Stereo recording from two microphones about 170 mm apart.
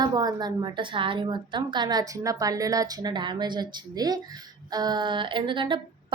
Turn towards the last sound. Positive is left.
turn(degrees=-30)  # may be behind; listen again after turning